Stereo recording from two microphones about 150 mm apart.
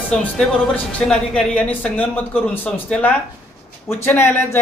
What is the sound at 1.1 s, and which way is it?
A woman's voice, 5° left (ahead or behind).